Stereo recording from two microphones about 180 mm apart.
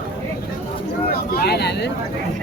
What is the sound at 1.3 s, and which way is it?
Speech, 65° left (ahead or behind).